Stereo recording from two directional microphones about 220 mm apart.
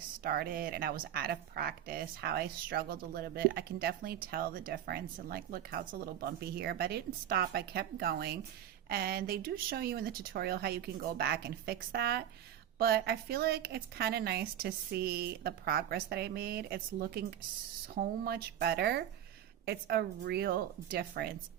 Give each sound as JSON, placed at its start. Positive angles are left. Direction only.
{"t": 0.2, "sound": "speech", "side_deg": -40}